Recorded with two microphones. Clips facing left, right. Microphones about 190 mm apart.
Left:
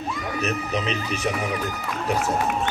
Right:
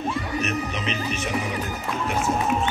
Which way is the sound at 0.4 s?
35° left (ahead or behind).